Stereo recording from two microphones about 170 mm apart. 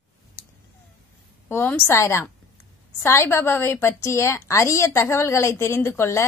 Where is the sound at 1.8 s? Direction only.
15° left (ahead or behind).